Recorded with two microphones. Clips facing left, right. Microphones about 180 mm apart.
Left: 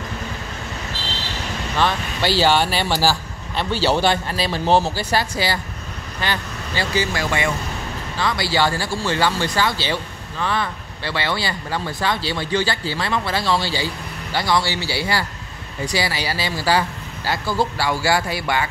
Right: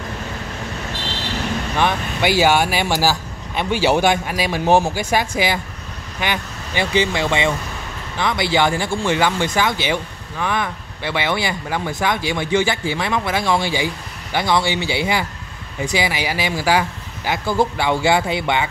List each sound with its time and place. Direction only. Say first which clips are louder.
1.8 s speech: right 1 dB; 15° right (ahead or behind)